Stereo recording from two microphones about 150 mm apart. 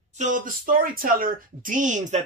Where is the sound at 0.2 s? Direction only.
65° right (ahead or behind).